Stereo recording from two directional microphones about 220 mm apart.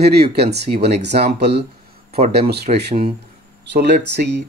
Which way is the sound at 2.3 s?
45° right (ahead or behind).